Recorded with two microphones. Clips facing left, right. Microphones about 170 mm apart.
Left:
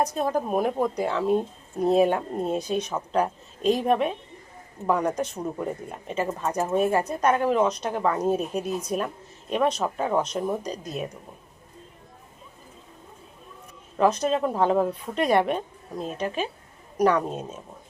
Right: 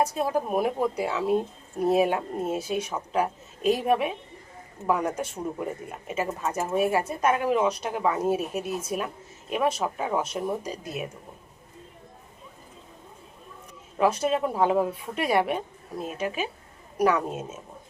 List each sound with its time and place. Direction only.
0.0 s speech: 5° right (ahead or behind)
14.0 s speech: 10° right (ahead or behind)